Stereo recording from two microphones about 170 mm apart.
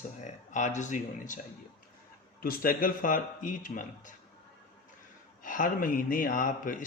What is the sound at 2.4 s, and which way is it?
Speech, 60° left (ahead or behind).